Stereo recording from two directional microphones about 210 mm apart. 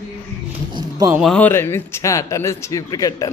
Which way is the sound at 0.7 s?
20° right (ahead or behind).